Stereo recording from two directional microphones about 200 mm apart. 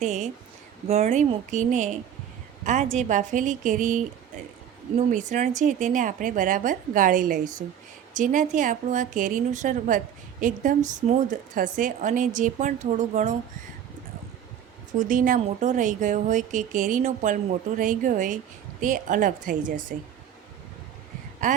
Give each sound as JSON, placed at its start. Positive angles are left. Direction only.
{"t": 0.0, "sound": "speech", "side_deg": -35}
{"t": 14.9, "sound": "speech", "side_deg": -40}
{"t": 21.4, "sound": "speech", "side_deg": -40}